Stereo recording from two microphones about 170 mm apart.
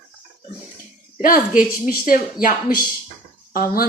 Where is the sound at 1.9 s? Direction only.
55° left (ahead or behind).